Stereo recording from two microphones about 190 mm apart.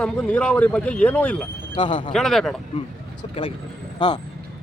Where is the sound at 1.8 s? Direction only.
25° left (ahead or behind).